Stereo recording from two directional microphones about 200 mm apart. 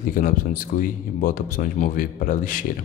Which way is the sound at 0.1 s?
45° left (ahead or behind).